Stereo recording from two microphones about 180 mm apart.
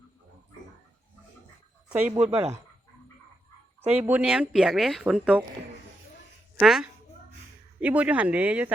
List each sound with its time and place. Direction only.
1.9 s speech: 5° right (ahead or behind)
2.3 s speech: 35° right (ahead or behind)
3.9 s speech: 10° right (ahead or behind)
6.6 s speech: centre (ahead or behind)